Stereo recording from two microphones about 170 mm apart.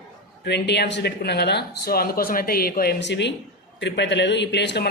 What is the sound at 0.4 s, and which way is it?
Speech, 85° left.